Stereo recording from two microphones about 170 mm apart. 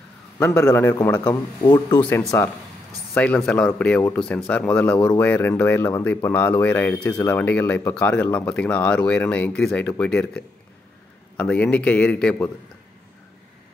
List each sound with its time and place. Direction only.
0.6 s speech: 15° left (ahead or behind)
1.2 s speech: 25° left (ahead or behind)
2.3 s speech: 15° left (ahead or behind)